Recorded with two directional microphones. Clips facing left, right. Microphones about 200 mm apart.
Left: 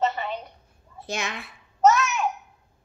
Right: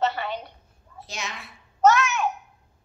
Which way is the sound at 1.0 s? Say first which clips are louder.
Left 5 dB; 55° left (ahead or behind).